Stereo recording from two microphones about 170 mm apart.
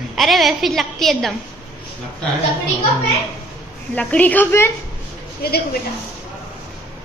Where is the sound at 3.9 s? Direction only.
10° left (ahead or behind).